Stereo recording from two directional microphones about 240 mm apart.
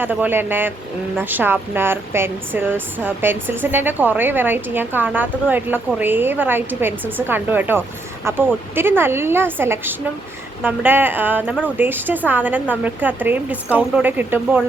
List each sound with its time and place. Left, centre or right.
0.0 s speech: centre